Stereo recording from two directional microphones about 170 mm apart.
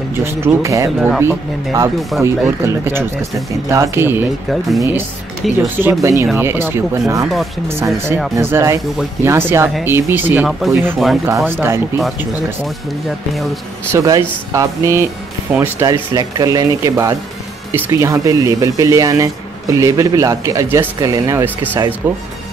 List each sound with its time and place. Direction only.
0.2 s speech: 15° right (ahead or behind)
0.9 s speech: centre (ahead or behind)
1.2 s speech: 15° right (ahead or behind)
2.0 s speech: centre (ahead or behind)
2.6 s speech: 15° right (ahead or behind)
4.5 s speech: centre (ahead or behind)
5.6 s speech: 10° right (ahead or behind)
13.9 s speech: 20° right (ahead or behind)